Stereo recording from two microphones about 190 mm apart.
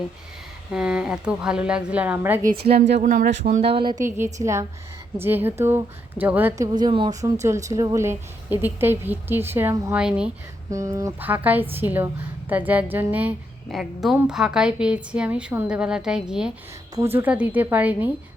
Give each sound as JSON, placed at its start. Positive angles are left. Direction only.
{"t": 0.7, "sound": "a woman's voice", "side_deg": -5}
{"t": 2.6, "sound": "speech", "side_deg": -30}
{"t": 3.7, "sound": "a woman's voice", "side_deg": -25}
{"t": 4.0, "sound": "speech", "side_deg": -15}
{"t": 6.7, "sound": "a woman's voice", "side_deg": -25}
{"t": 10.7, "sound": "a woman's voice", "side_deg": -15}
{"t": 16.9, "sound": "speech", "side_deg": -15}